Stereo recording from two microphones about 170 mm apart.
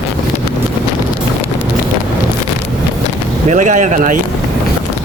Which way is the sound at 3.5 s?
45° right (ahead or behind).